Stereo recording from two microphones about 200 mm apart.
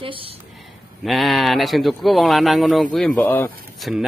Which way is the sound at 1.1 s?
Centre (ahead or behind).